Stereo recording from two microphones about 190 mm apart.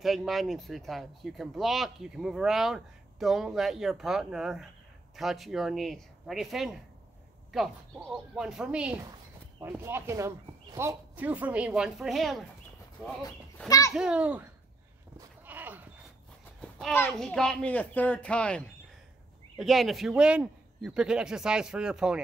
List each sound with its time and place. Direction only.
0.0 s speech: centre (ahead or behind)
13.7 s a child's voice: 15° left (ahead or behind)
13.9 s speech: 5° right (ahead or behind)
15.1 s a sound: 10° right (ahead or behind)
16.7 s speech: 5° left (ahead or behind)
19.6 s speech: centre (ahead or behind)